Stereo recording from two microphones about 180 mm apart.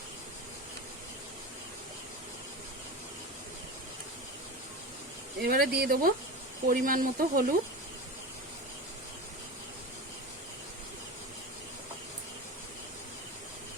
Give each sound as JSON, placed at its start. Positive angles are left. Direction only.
{"t": 5.4, "sound": "speech", "side_deg": -60}